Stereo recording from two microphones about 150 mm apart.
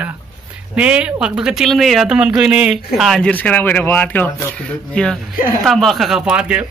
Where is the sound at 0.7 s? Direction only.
5° right (ahead or behind).